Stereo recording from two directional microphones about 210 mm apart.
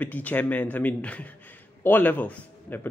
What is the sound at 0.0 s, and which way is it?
Speech, 10° left (ahead or behind).